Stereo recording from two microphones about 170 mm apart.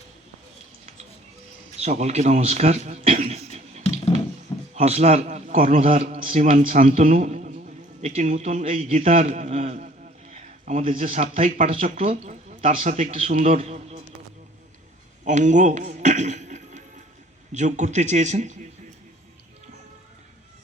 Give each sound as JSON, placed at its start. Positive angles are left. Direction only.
{"t": 1.8, "sound": "a man's voice", "side_deg": -40}
{"t": 5.9, "sound": "a man's voice", "side_deg": -35}
{"t": 15.2, "sound": "a sound", "side_deg": -45}
{"t": 17.5, "sound": "a man's voice", "side_deg": -45}